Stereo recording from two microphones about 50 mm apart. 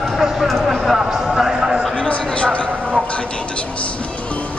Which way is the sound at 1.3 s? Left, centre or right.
Centre.